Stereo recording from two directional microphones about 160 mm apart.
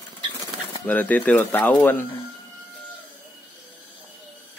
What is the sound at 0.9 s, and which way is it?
Speech, 10° left (ahead or behind).